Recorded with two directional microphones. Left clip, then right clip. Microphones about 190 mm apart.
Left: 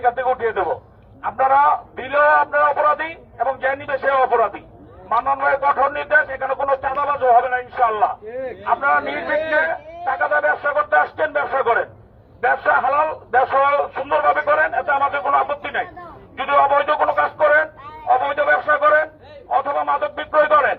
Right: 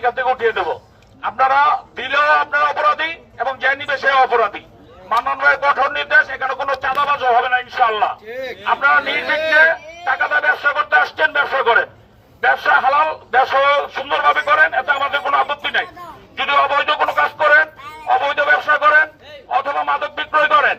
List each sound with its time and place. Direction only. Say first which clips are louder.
0.0 s speech: right 2 dB; 15° right (ahead or behind)
8.3 s a man's voice: right 1 dB; 5° left (ahead or behind)
8.6 s a man's voice: right 3 dB; 15° right (ahead or behind)
16.4 s telephone: even; 10° right (ahead or behind)
18.1 s a sound: right 2 dB; 10° right (ahead or behind)
19.5 s speech: right 1 dB; 15° right (ahead or behind)